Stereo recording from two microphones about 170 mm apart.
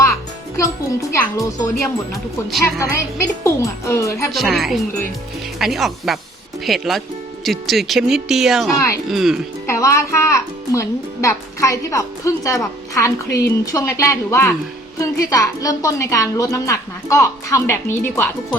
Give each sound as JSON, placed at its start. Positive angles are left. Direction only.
{"t": 0.0, "sound": "music", "side_deg": 20}
{"t": 1.1, "sound": "a child's voice", "side_deg": 20}
{"t": 4.3, "sound": "speech", "side_deg": 0}
{"t": 9.6, "sound": "a child's voice", "side_deg": 15}